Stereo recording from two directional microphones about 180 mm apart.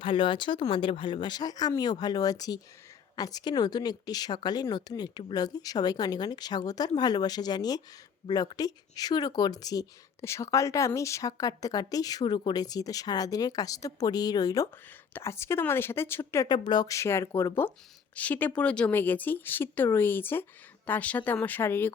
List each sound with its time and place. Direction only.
0.0 s speech: 25° left (ahead or behind); by 21.9 s 10° left (ahead or behind)